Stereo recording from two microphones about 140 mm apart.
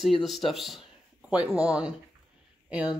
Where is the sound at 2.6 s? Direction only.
10° right (ahead or behind).